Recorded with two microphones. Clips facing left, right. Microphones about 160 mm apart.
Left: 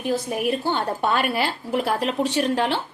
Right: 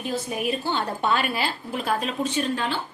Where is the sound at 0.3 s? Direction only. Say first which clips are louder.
Left 3 dB; 55° left (ahead or behind); by 2.8 s 75° left (ahead or behind).